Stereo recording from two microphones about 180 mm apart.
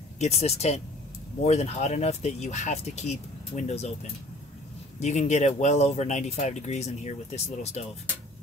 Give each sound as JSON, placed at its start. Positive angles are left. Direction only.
{"t": 0.2, "sound": "speech", "side_deg": 35}
{"t": 5.0, "sound": "speech", "side_deg": 40}